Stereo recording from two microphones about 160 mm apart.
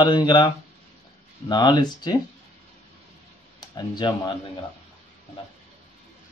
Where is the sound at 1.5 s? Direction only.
25° left (ahead or behind).